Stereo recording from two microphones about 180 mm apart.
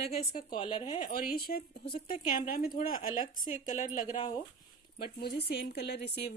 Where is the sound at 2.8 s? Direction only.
50° left (ahead or behind).